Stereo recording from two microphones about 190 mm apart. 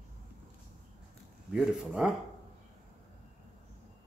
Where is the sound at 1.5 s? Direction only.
5° right (ahead or behind).